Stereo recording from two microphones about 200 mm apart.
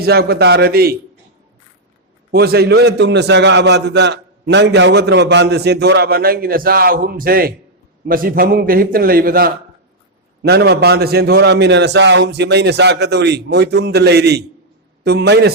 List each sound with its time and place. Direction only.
0.0 s a man's voice: 50° right (ahead or behind)
2.3 s a man's voice: 50° right (ahead or behind)